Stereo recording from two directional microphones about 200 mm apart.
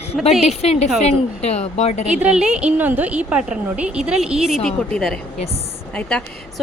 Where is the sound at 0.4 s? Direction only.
30° left (ahead or behind).